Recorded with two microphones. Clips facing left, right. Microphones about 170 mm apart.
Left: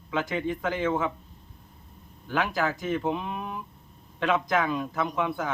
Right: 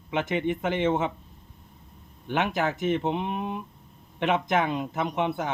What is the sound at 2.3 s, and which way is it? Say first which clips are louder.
A man's voice: right 1 dB; 25° right (ahead or behind).